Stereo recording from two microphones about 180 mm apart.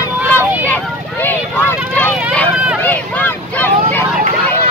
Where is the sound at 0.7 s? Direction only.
10° left (ahead or behind).